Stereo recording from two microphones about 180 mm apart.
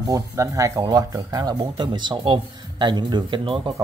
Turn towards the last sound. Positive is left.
turn(degrees=-25)  # may be behind; listen again after turning